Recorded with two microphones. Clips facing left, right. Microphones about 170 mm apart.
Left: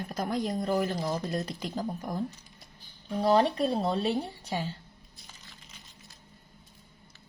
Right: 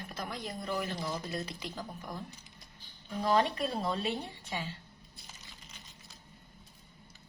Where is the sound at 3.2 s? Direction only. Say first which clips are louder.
Left 5 dB; 30° left (ahead or behind).